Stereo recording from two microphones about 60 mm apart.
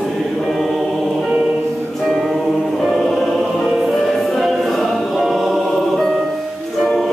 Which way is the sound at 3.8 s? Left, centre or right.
Centre.